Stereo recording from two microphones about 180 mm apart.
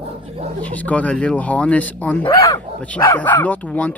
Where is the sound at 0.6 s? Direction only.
10° left (ahead or behind).